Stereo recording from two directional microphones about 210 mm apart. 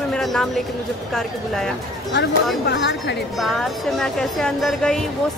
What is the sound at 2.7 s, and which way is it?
Speech, 55° left (ahead or behind).